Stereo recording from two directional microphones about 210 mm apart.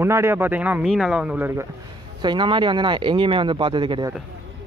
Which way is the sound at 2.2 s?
20° right (ahead or behind).